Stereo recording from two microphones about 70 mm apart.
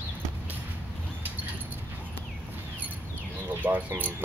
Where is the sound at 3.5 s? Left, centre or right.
Right.